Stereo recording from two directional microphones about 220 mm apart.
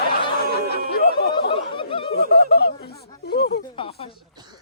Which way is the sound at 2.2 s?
45° left (ahead or behind).